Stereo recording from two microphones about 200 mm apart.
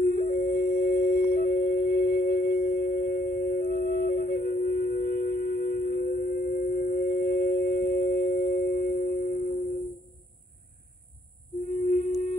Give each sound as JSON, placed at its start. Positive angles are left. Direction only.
{"t": 0.0, "sound": "music", "side_deg": 45}
{"t": 11.9, "sound": "singing bowl", "side_deg": 40}